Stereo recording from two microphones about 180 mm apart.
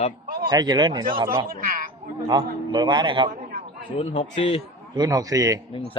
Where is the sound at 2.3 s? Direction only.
25° right (ahead or behind).